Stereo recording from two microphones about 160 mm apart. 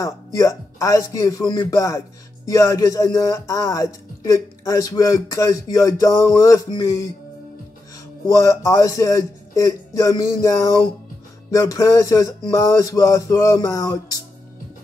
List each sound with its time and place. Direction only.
0.0 s speech: 20° left (ahead or behind)
8.3 s speech: 20° left (ahead or behind)